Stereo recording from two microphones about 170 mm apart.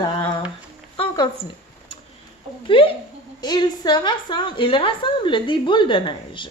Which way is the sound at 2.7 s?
30° left (ahead or behind).